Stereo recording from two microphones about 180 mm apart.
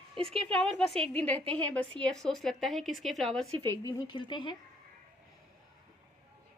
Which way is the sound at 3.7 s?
20° left (ahead or behind).